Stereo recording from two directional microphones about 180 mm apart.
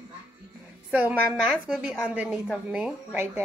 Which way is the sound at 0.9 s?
10° right (ahead or behind).